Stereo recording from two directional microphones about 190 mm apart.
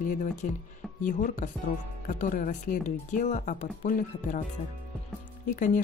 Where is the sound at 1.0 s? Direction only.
40° left (ahead or behind).